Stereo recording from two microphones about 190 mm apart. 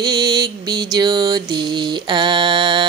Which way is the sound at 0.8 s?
20° right (ahead or behind).